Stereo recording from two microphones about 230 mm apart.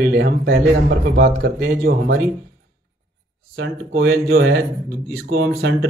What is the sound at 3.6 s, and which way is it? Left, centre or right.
Speech, right.